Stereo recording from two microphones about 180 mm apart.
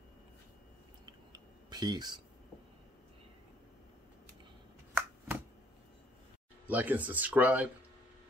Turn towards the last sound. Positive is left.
turn(degrees=-10)  # may be behind; listen again after turning